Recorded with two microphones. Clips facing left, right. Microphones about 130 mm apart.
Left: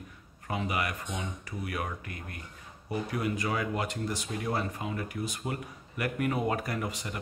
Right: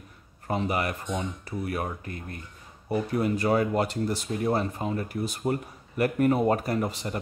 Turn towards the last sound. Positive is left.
turn(degrees=-35)  # may be behind; listen again after turning